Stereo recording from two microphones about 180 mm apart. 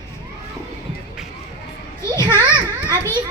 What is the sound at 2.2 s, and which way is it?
Children playing, 25° right (ahead or behind).